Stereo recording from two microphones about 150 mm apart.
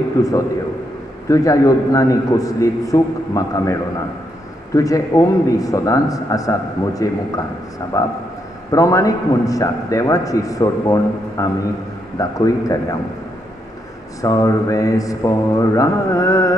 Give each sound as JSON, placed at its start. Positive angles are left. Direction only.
{"t": 0.2, "sound": "a man's voice", "side_deg": 20}
{"t": 4.7, "sound": "a man's voice", "side_deg": 20}
{"t": 14.2, "sound": "a man's voice", "side_deg": 20}